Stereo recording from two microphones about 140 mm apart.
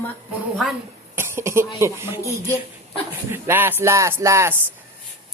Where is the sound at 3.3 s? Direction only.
15° right (ahead or behind).